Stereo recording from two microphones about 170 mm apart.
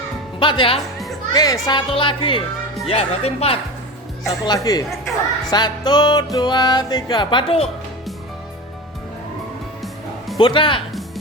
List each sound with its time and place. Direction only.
0.3 s a child's voice: 30° left (ahead or behind)
4.4 s speech: 20° left (ahead or behind)
10.3 s speech: 30° left (ahead or behind)